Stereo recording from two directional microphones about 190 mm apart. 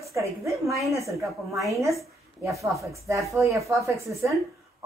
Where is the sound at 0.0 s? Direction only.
15° right (ahead or behind).